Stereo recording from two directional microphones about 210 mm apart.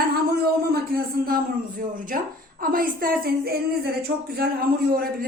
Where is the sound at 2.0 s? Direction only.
40° right (ahead or behind).